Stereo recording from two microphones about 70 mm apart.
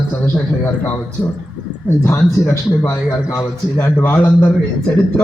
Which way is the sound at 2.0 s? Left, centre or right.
Left.